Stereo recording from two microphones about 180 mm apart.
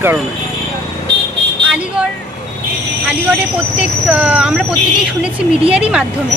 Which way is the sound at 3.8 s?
5° right (ahead or behind).